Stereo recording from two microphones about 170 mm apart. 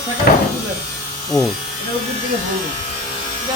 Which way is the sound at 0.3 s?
60° left (ahead or behind).